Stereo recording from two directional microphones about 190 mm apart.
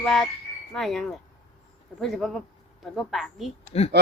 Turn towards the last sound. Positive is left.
turn(degrees=30)  # may be behind; listen again after turning